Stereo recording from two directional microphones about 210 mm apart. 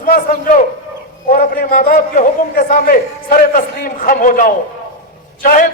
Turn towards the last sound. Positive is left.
turn(degrees=40)  # may be behind; listen again after turning